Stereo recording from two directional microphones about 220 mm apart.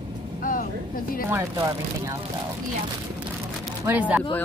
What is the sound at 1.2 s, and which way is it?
Speech, 15° right (ahead or behind).